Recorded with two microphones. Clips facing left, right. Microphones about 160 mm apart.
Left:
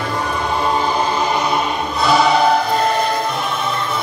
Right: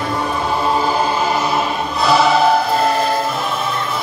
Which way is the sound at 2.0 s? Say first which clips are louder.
Right 1 dB; centre (ahead or behind).